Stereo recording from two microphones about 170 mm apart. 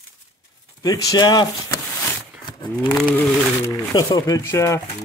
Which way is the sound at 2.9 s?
5° left (ahead or behind).